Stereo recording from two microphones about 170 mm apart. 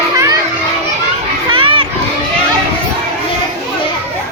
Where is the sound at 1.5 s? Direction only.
30° right (ahead or behind).